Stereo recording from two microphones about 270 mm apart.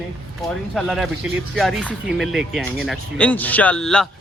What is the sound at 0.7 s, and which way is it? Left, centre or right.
Speech, centre.